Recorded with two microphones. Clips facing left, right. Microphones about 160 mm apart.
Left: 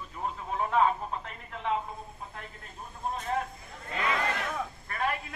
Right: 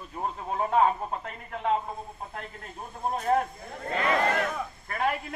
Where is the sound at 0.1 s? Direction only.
40° right (ahead or behind).